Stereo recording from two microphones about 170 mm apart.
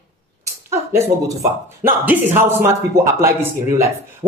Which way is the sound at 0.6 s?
15° right (ahead or behind).